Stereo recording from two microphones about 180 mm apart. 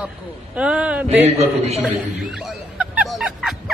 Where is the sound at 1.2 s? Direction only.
35° right (ahead or behind).